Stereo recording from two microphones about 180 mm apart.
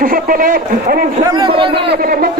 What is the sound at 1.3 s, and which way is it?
Speech, 25° right (ahead or behind).